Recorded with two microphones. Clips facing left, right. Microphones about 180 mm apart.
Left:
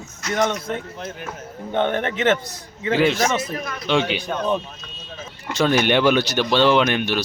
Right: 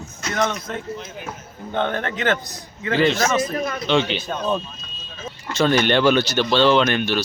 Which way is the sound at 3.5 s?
25° right (ahead or behind).